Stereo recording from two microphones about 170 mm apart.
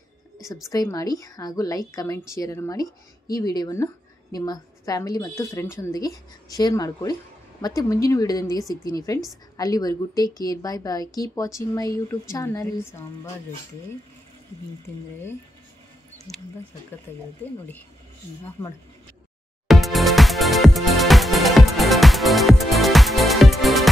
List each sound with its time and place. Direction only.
0.7 s a woman's voice: 20° left (ahead or behind)
16.3 s speech: centre (ahead or behind)
17.1 s speech: 10° left (ahead or behind)
19.7 s music: centre (ahead or behind)